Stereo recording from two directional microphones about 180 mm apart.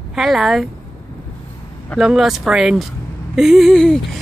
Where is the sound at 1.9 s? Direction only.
Centre (ahead or behind).